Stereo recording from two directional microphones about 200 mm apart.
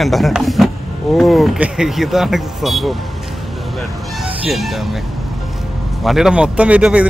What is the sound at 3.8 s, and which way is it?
Vehicle, centre (ahead or behind).